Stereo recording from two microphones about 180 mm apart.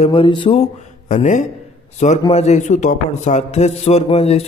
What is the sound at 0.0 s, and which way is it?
A man's voice, 30° left (ahead or behind).